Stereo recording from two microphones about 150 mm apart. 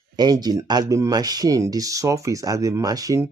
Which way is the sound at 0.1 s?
25° right (ahead or behind).